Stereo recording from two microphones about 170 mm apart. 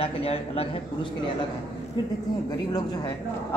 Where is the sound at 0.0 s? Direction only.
35° left (ahead or behind).